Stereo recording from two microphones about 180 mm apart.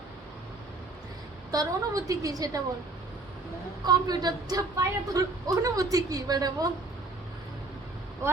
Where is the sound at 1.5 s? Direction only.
20° right (ahead or behind).